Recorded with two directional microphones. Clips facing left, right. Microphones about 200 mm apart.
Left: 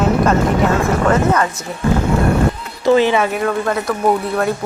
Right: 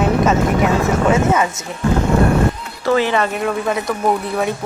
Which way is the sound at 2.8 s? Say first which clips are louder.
Left 3 dB; 20° left (ahead or behind).